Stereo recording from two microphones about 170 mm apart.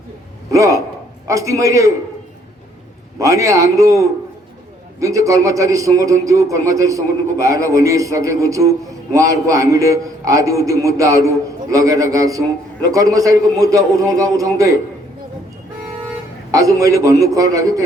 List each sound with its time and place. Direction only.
0.5 s a man's voice: 20° right (ahead or behind)
3.2 s a man's voice: 20° right (ahead or behind)
16.5 s a man's voice: 20° right (ahead or behind)